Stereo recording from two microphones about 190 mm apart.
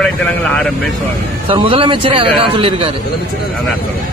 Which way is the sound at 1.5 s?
25° right (ahead or behind).